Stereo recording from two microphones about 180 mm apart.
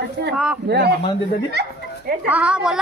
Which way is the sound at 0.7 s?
70° right (ahead or behind).